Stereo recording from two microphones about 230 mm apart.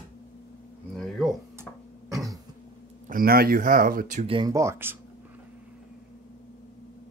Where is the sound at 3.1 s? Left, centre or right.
Right; by 5.0 s centre.